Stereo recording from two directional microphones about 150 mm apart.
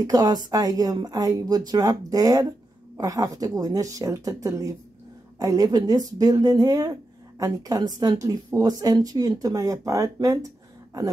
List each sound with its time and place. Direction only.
0.0 s a woman's voice: 25° right (ahead or behind)